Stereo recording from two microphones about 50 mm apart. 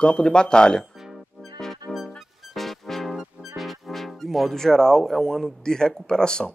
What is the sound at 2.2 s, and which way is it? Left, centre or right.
Music, centre.